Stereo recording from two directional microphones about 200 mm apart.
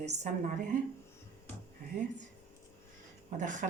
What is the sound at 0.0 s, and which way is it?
Speech, 35° right (ahead or behind).